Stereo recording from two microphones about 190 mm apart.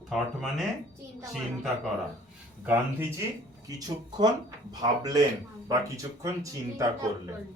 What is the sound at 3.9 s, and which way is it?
Speech, 20° right (ahead or behind).